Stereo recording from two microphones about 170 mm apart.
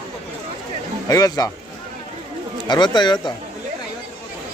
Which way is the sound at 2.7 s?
25° left (ahead or behind).